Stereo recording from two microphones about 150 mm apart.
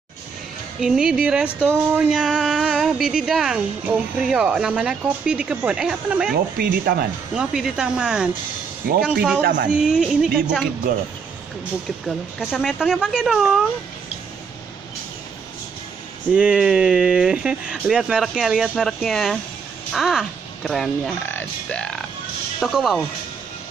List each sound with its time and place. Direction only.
0.7 s speech: 5° right (ahead or behind)
6.3 s speech: 90° right
7.3 s a man's voice: 5° right (ahead or behind)
9.4 s a man's voice: 60° right (ahead or behind)
9.7 s speech: 5° right (ahead or behind)
12.4 s speech: 5° right (ahead or behind)
16.3 s speech: 5° right (ahead or behind)